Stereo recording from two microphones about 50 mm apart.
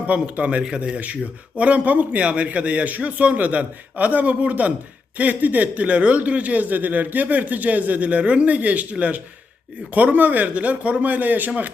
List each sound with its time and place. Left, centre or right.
0.1 s a man's voice: right